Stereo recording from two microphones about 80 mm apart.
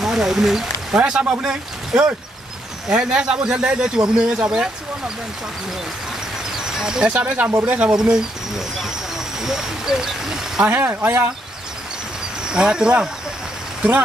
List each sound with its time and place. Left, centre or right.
0.0 s speech: centre
6.5 s a sound: centre
7.2 s speech: centre
10.7 s speech: right
12.4 s speech: centre